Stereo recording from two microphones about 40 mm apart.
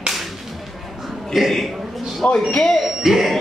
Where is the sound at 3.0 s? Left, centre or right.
Centre.